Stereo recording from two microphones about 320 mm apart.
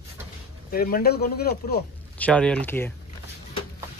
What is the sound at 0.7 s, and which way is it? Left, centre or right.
Speech, left.